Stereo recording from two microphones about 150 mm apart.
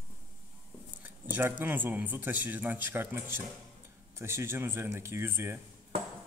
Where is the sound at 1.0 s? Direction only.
15° right (ahead or behind).